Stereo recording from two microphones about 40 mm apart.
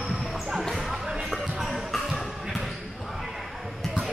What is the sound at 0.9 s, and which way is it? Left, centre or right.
Music, centre.